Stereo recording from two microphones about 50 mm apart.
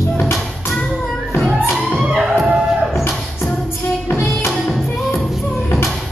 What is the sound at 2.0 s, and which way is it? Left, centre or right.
Music, centre.